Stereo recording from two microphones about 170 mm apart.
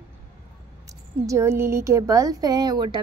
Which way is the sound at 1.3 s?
15° right (ahead or behind).